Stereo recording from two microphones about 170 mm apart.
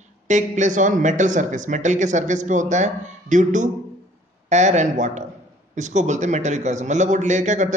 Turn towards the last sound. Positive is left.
turn(degrees=-45)  # may be behind; listen again after turning